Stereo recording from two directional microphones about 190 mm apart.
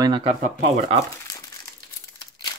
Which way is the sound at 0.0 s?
30° right (ahead or behind).